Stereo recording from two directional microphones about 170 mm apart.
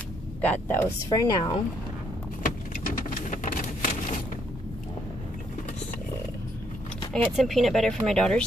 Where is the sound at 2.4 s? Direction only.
55° left (ahead or behind).